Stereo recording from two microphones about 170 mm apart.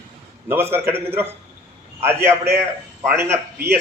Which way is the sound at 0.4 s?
15° right (ahead or behind).